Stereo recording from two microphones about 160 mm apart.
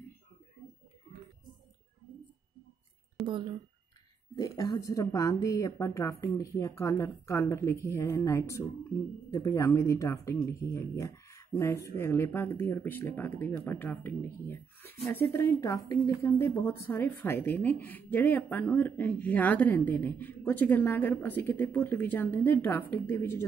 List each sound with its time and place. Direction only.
3.2 s speech: centre (ahead or behind)
4.4 s speech: 20° left (ahead or behind)